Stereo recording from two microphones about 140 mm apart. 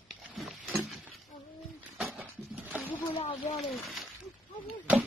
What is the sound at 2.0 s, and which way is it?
Dog, centre (ahead or behind).